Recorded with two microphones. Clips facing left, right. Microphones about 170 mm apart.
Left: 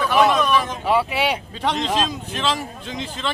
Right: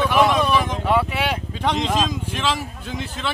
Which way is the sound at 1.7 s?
10° right (ahead or behind).